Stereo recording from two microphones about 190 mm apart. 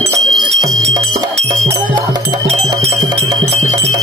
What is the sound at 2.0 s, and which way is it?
Music, 20° right (ahead or behind).